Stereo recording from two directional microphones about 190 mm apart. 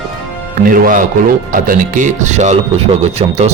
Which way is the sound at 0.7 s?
45° right (ahead or behind).